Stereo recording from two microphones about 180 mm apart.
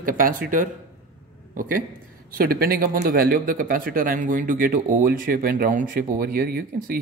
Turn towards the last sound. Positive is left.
turn(degrees=-55)  # may be behind; listen again after turning